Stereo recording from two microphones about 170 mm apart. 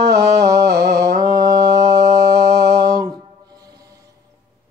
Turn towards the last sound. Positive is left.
turn(degrees=-25)  # may be behind; listen again after turning